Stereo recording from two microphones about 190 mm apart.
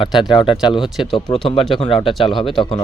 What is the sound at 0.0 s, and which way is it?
Speech, 25° left (ahead or behind).